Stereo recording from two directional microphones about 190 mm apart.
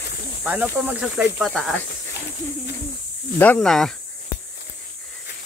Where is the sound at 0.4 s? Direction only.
5° right (ahead or behind).